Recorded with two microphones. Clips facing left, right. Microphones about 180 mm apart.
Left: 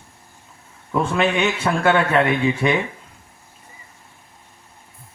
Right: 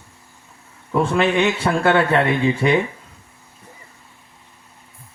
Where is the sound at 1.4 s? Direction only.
30° right (ahead or behind).